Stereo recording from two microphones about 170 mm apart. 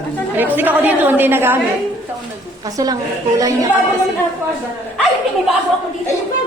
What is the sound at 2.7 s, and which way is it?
Speech, 20° right (ahead or behind).